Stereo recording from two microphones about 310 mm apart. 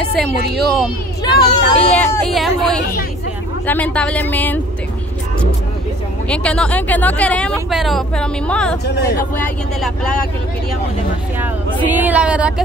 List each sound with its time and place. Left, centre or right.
1.2 s speech: centre
6.2 s speech: centre
8.8 s speech: left
9.3 s speech: centre
11.3 s speech: centre